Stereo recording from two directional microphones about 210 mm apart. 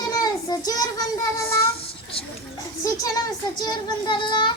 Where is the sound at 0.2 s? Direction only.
20° left (ahead or behind).